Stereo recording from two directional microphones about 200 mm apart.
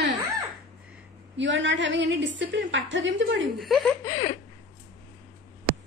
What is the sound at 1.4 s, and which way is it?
A woman's voice, 65° right (ahead or behind).